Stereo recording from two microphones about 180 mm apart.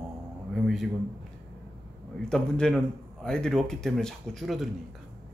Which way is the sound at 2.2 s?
5° left (ahead or behind).